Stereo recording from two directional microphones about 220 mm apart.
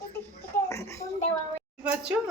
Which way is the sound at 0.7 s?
15° left (ahead or behind).